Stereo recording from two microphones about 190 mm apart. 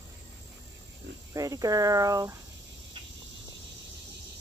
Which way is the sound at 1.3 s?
20° right (ahead or behind).